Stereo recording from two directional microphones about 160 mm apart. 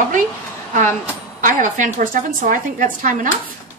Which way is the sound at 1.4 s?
55° right (ahead or behind).